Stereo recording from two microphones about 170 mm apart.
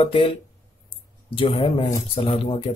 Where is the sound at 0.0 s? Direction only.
30° left (ahead or behind).